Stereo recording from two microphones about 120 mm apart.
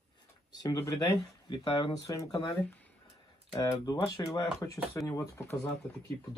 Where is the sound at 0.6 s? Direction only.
30° left (ahead or behind).